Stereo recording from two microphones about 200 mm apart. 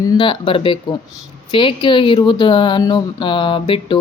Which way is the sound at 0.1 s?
25° left (ahead or behind).